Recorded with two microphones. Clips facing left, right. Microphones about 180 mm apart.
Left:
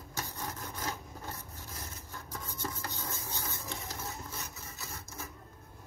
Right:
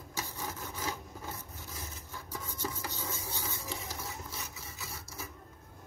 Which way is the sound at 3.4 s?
10° right (ahead or behind).